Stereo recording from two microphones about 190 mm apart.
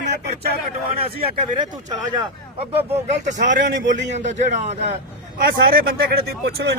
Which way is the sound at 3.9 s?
40° right (ahead or behind).